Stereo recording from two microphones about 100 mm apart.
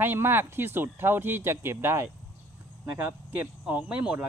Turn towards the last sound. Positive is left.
turn(degrees=-10)  # may be behind; listen again after turning